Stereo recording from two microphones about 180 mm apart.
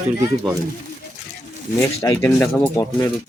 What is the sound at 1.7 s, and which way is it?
Speech, 15° left (ahead or behind).